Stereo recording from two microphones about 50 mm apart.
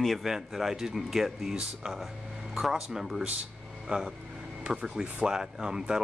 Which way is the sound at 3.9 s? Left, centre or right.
Right.